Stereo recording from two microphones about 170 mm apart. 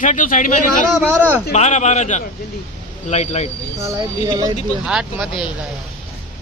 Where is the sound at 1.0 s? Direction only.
10° right (ahead or behind).